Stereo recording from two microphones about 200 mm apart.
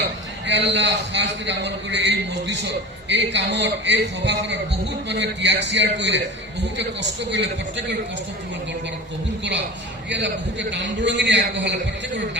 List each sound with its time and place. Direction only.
0.4 s a man's voice: 60° right (ahead or behind)
10.6 s a man's voice: 65° right (ahead or behind)